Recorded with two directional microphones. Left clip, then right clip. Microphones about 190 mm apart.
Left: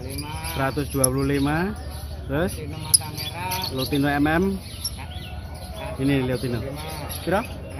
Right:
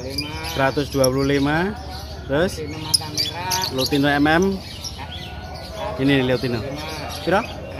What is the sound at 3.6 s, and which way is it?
Speech, 5° right (ahead or behind).